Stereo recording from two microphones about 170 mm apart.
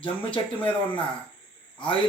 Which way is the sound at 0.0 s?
30° left (ahead or behind).